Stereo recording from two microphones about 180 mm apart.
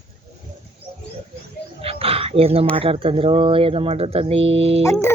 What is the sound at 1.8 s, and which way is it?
Dog, 30° right (ahead or behind).